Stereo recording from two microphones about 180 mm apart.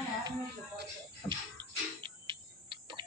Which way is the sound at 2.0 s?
30° right (ahead or behind).